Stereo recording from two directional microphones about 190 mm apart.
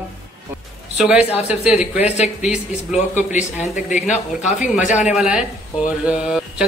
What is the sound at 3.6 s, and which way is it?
Speech, 40° left (ahead or behind).